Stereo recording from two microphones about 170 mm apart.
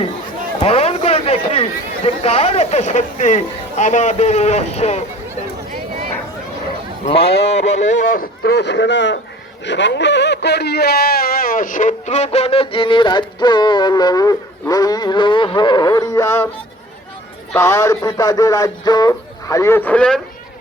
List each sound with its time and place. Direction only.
0.6 s a sound: 35° left (ahead or behind)
2.0 s speech: 35° left (ahead or behind)
7.4 s speech: 40° left (ahead or behind); by 16.5 s 15° left (ahead or behind)
17.5 s speech: 15° left (ahead or behind)